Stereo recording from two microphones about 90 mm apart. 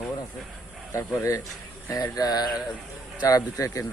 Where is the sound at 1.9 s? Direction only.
40° left (ahead or behind).